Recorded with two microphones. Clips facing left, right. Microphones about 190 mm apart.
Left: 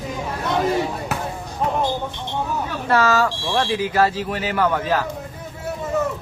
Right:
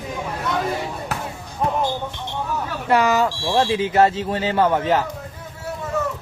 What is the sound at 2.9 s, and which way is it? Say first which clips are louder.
Speech: right 1 dB; 15° right (ahead or behind).